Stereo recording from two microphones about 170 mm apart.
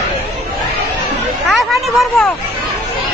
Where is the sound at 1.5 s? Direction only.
Centre (ahead or behind).